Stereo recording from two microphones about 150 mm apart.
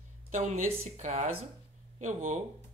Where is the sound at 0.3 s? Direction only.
55° right (ahead or behind).